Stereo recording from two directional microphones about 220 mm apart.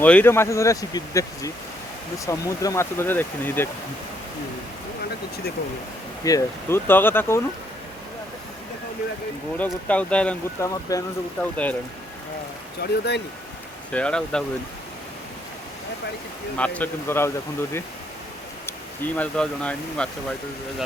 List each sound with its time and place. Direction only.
0.0 s speech: 5° left (ahead or behind)
6.2 s speech: 15° left (ahead or behind)
9.6 s speech: 5° left (ahead or behind)
12.8 s speech: 50° left (ahead or behind)
13.9 s speech: 5° left (ahead or behind)
16.6 s speech: 5° left (ahead or behind)
19.1 s speech: 5° left (ahead or behind)